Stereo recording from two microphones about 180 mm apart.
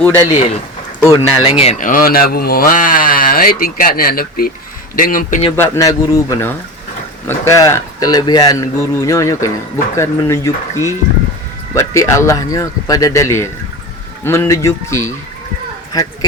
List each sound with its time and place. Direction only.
0.0 s speech: 10° left (ahead or behind)
1.5 s speech: 35° left (ahead or behind)
1.9 s speech: 55° left (ahead or behind)
5.5 s speech: 15° left (ahead or behind)